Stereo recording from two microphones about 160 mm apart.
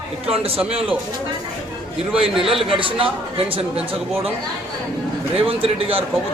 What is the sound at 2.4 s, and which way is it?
Speech, 35° right (ahead or behind).